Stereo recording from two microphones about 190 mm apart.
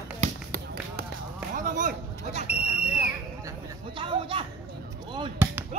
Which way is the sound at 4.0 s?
25° right (ahead or behind).